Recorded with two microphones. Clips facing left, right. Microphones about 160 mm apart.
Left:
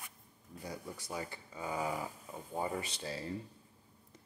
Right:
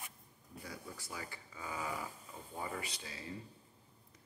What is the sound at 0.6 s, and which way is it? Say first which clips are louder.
Speech: left 4 dB; 20° left (ahead or behind).